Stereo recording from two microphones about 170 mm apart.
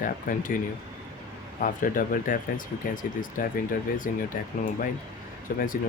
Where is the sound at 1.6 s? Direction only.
55° left (ahead or behind).